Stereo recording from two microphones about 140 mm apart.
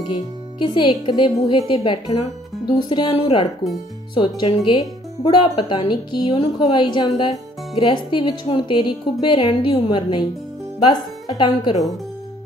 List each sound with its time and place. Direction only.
0.6 s speech: 35° left (ahead or behind)